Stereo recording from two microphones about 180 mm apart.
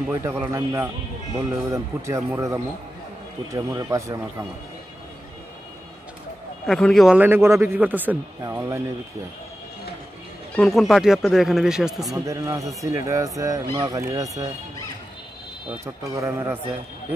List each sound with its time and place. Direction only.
0.1 s a man's voice: 15° right (ahead or behind)
6.6 s a man's voice: 5° left (ahead or behind); by 8.8 s 15° right (ahead or behind)
10.5 s speech: centre (ahead or behind)
12.3 s speech: 20° right (ahead or behind)
15.8 s a man's voice: 15° right (ahead or behind)